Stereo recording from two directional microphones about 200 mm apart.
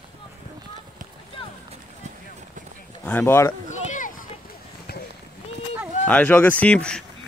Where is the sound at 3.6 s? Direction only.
40° left (ahead or behind).